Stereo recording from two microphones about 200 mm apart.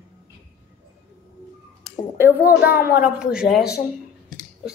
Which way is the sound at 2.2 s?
10° right (ahead or behind).